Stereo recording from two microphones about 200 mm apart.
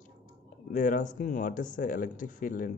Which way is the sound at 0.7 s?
40° left (ahead or behind).